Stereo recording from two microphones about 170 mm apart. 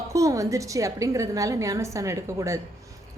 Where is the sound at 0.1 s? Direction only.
20° right (ahead or behind).